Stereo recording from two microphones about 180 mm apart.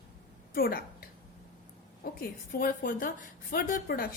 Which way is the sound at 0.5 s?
55° left (ahead or behind).